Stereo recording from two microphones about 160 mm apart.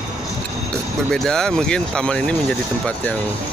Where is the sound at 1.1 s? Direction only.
5° left (ahead or behind).